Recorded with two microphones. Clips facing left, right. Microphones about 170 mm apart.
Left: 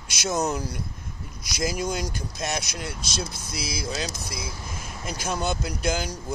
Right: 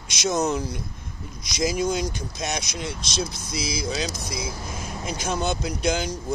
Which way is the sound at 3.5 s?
55° left (ahead or behind).